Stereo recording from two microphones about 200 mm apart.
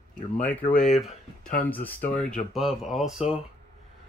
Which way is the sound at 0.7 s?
40° left (ahead or behind).